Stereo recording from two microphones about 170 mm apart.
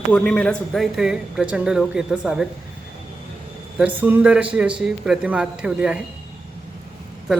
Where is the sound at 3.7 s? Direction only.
10° right (ahead or behind).